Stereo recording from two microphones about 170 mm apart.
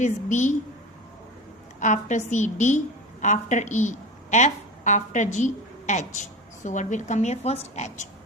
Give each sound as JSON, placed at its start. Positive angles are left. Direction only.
{"t": 0.0, "sound": "a woman's voice", "side_deg": 45}
{"t": 1.8, "sound": "a woman's voice", "side_deg": 45}